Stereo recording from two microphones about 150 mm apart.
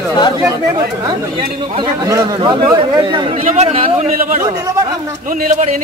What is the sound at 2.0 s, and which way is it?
Speech, 25° right (ahead or behind).